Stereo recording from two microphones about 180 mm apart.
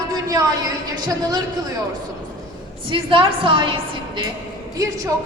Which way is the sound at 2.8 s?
30° right (ahead or behind).